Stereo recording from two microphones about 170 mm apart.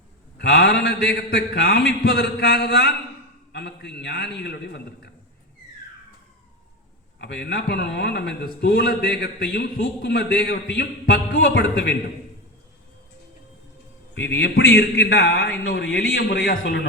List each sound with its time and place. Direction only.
0.3 s a man's voice: 80° left
7.2 s a man's voice: 90° left
14.1 s a man's voice: 90° left
15.7 s a man's voice: 70° left (ahead or behind)